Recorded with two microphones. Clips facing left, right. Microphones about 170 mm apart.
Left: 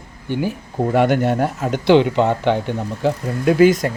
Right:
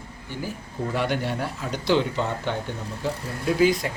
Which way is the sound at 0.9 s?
50° left (ahead or behind).